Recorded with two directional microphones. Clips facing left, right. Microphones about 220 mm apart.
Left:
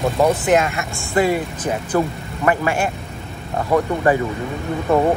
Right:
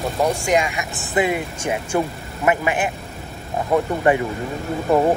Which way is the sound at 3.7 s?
15° right (ahead or behind).